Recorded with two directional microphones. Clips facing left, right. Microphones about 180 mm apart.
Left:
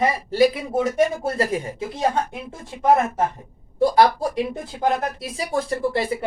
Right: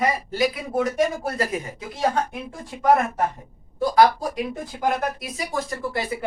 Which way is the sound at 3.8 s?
30° left (ahead or behind).